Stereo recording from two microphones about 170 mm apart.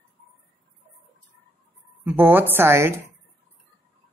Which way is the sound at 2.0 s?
10° right (ahead or behind).